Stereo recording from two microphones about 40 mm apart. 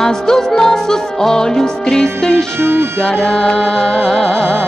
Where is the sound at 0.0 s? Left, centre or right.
Centre.